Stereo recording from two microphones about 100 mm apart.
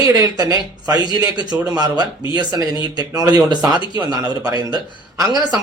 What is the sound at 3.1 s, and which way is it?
Speech, 45° right (ahead or behind).